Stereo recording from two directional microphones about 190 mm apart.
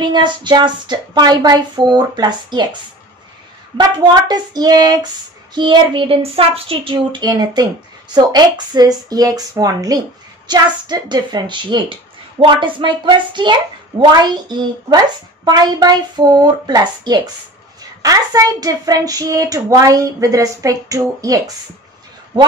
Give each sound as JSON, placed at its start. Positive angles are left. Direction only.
{"t": 0.0, "sound": "speech", "side_deg": -25}
{"t": 3.7, "sound": "speech", "side_deg": -20}